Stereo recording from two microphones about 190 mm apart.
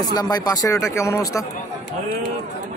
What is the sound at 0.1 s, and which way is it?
A man's voice, 20° left (ahead or behind).